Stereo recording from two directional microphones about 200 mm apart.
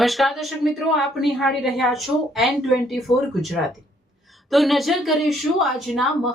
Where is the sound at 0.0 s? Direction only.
Centre (ahead or behind).